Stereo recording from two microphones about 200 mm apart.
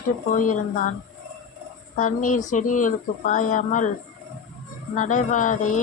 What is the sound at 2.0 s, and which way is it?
Speech, 40° left (ahead or behind).